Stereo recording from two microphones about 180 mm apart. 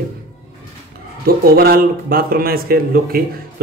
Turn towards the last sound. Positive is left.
turn(degrees=-55)  # may be behind; listen again after turning